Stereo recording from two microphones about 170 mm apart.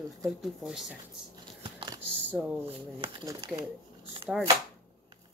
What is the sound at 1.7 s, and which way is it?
Typing, 25° right (ahead or behind).